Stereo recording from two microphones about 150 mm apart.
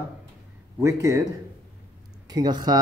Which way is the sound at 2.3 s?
30° right (ahead or behind).